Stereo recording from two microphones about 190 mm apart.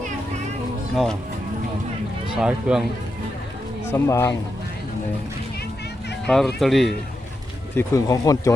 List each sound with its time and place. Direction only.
2.3 s speech: 5° right (ahead or behind)
3.8 s speech: 15° left (ahead or behind)
6.2 s speech: 5° left (ahead or behind)
7.8 s speech: 15° left (ahead or behind)